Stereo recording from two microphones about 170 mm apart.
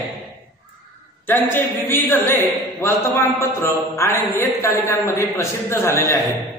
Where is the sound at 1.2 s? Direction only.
10° left (ahead or behind).